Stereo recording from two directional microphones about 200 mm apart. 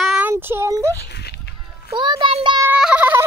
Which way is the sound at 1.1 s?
55° left (ahead or behind).